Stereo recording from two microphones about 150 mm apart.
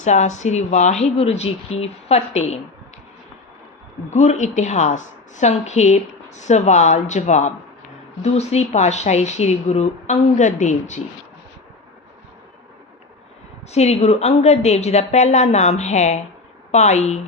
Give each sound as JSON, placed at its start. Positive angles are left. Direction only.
{"t": 0.0, "sound": "a woman's voice", "side_deg": 50}
{"t": 4.1, "sound": "a woman's voice", "side_deg": 50}
{"t": 13.7, "sound": "a woman's voice", "side_deg": 45}